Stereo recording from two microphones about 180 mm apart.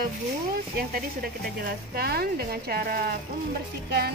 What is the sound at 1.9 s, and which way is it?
Speech, 60° right (ahead or behind).